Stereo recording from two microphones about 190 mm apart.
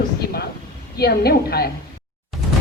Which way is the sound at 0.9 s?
55° left (ahead or behind).